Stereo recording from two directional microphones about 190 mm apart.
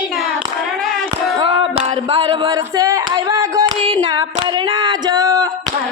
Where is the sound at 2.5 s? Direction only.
15° right (ahead or behind).